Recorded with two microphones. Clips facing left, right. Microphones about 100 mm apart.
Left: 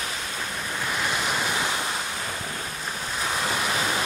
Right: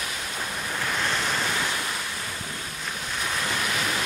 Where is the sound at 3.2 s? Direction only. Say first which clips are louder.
Left 2 dB; 20° left (ahead or behind).